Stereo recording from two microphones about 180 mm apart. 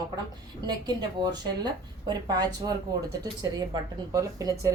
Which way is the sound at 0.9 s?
25° right (ahead or behind).